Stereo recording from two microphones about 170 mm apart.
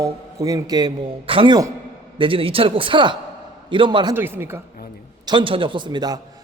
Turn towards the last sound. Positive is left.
turn(degrees=-25)  # may be behind; listen again after turning